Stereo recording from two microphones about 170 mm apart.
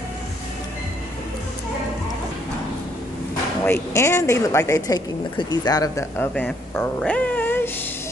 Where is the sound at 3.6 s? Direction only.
15° left (ahead or behind).